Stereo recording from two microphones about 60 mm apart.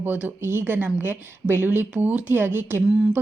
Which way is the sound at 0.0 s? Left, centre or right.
Right.